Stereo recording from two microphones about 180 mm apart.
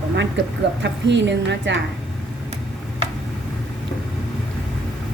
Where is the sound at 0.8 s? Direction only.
75° right (ahead or behind).